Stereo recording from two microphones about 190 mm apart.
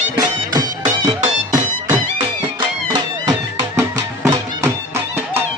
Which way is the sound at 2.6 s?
25° right (ahead or behind).